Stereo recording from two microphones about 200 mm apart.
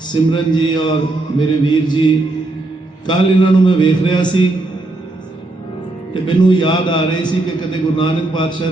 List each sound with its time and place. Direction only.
0.1 s a man's voice: 25° left (ahead or behind)
6.2 s a man's voice: 25° left (ahead or behind)